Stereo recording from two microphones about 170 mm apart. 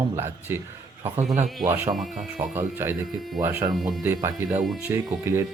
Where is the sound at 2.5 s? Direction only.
15° right (ahead or behind).